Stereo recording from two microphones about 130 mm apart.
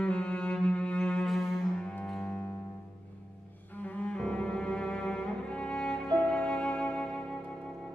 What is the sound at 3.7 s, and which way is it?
Cello, 10° left (ahead or behind).